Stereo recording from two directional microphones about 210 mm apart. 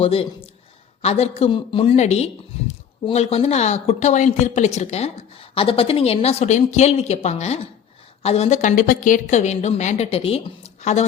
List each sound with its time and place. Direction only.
0.0 s speech: 25° left (ahead or behind)